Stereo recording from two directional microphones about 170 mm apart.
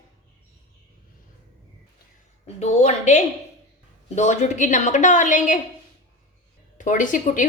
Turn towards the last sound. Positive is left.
turn(degrees=50)  # may be behind; listen again after turning